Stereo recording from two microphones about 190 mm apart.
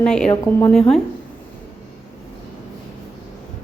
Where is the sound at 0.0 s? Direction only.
5° left (ahead or behind).